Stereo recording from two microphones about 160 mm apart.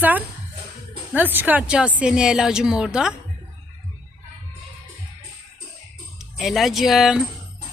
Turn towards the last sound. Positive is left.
turn(degrees=0)  # may be behind; listen again after turning